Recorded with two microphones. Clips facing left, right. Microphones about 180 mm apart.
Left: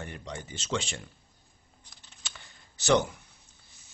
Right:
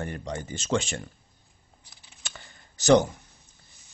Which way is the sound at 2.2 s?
45° right (ahead or behind).